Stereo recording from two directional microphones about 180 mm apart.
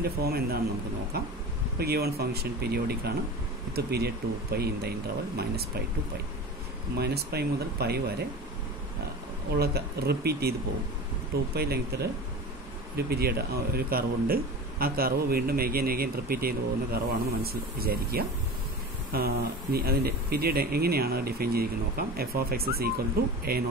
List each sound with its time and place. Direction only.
0.0 s a man's voice: 60° right (ahead or behind)
1.8 s a man's voice: 60° right (ahead or behind)
7.0 s a man's voice: 60° right (ahead or behind)
9.6 s a man's voice: 60° right (ahead or behind)
11.5 s a man's voice: 60° right (ahead or behind)